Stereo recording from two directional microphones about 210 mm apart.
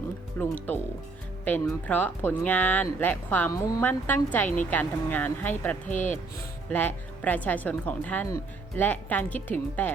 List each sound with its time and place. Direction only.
0.4 s speech: 10° left (ahead or behind)
5.8 s speech: 35° left (ahead or behind)
6.7 s speech: 10° left (ahead or behind)